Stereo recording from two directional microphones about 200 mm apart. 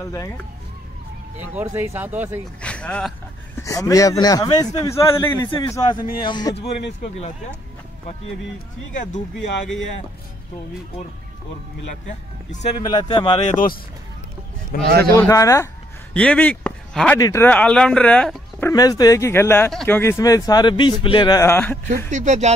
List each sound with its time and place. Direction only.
0.0 s speech: 15° left (ahead or behind)
1.5 s speech: 10° right (ahead or behind)
2.6 s speech: 5° left (ahead or behind)
3.5 s speech: 15° left (ahead or behind)
8.9 s speech: 35° left (ahead or behind)
12.7 s a man's voice: 25° left (ahead or behind)
14.7 s a man's voice: 45° left (ahead or behind)
15.1 s speech: 15° left (ahead or behind)
22.1 s speech: 35° right (ahead or behind)